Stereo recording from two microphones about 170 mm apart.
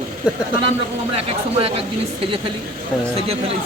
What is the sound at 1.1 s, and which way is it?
Speech, 35° right (ahead or behind).